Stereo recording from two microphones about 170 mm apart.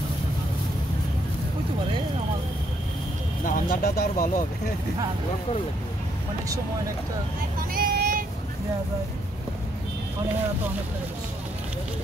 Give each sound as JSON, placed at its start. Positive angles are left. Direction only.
{"t": 3.4, "sound": "speech", "side_deg": 55}
{"t": 7.7, "sound": "child singing", "side_deg": -60}